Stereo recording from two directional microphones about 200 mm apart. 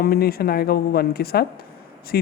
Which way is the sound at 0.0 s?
50° left (ahead or behind).